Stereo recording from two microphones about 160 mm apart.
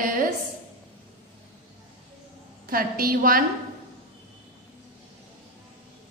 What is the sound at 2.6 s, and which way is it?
Speech, 65° right (ahead or behind).